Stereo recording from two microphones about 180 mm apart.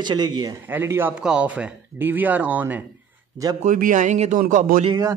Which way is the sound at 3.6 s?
45° right (ahead or behind).